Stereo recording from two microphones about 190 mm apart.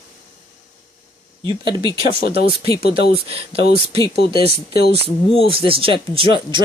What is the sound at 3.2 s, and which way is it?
Speech, 30° right (ahead or behind).